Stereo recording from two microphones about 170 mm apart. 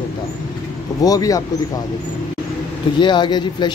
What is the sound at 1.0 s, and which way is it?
Speech, 20° left (ahead or behind).